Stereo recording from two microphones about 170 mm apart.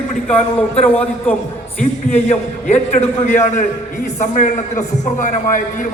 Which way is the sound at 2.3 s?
40° left (ahead or behind).